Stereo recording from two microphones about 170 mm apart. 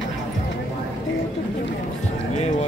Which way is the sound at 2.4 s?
40° left (ahead or behind).